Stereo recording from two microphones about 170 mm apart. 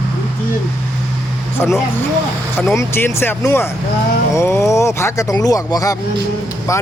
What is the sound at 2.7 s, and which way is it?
A man's voice, 15° left (ahead or behind).